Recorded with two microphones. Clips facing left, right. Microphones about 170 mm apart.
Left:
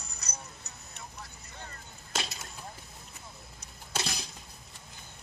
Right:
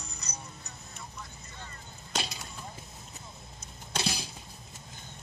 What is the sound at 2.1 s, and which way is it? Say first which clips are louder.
Chop: right 1 dB; centre (ahead or behind).